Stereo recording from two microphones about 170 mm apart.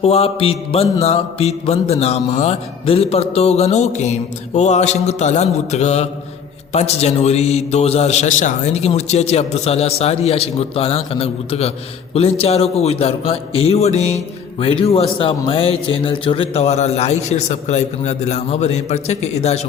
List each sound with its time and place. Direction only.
0.0 s mantra: 35° left (ahead or behind)